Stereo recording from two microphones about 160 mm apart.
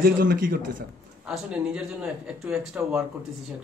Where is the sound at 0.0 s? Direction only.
65° right (ahead or behind).